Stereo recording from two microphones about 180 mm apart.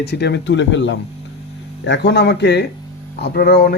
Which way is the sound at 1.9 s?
70° left (ahead or behind).